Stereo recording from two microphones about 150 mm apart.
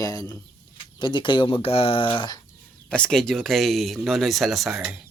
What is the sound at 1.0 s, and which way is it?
Speech, 30° left (ahead or behind).